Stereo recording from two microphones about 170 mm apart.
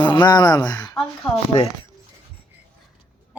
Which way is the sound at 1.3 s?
40° left (ahead or behind).